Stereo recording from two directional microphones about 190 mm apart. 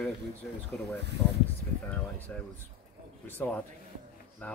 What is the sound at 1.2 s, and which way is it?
Speech, 15° left (ahead or behind).